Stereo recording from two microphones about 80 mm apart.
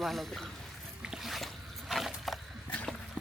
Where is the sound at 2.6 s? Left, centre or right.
Centre.